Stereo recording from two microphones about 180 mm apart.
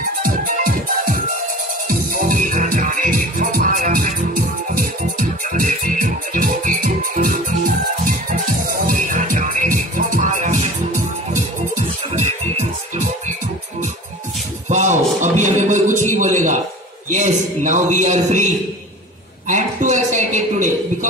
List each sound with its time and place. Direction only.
0.2 s music: 50° right (ahead or behind)
14.7 s a sound: 40° right (ahead or behind)
17.1 s a man's voice: 40° right (ahead or behind)